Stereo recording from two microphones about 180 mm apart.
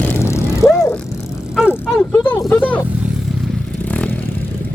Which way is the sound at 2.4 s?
10° left (ahead or behind).